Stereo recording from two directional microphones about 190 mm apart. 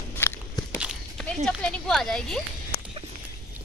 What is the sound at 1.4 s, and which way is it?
Speech, 5° left (ahead or behind).